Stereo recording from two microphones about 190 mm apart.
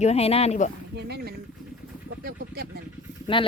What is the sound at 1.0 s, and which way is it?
Speech, 55° right (ahead or behind).